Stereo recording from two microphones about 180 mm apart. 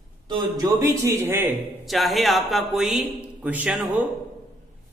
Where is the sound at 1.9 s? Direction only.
Centre (ahead or behind).